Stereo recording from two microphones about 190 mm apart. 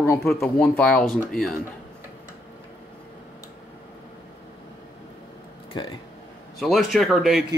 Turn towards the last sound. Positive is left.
turn(degrees=0)  # may be behind; listen again after turning